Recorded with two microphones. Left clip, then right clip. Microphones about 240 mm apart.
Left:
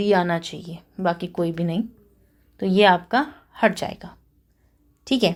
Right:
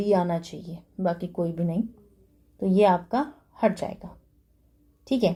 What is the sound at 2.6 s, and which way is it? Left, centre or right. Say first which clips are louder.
A woman's voice: left 4 dB; left.